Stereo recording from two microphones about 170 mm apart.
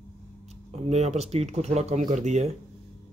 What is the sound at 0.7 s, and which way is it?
Speech, 40° right (ahead or behind).